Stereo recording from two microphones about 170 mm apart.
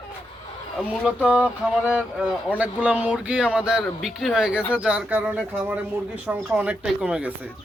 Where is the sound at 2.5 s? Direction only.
10° right (ahead or behind).